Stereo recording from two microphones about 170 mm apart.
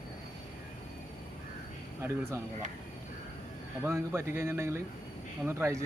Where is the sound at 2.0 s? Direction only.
15° right (ahead or behind).